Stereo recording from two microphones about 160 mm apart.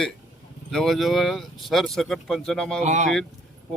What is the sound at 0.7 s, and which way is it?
Speech, centre (ahead or behind).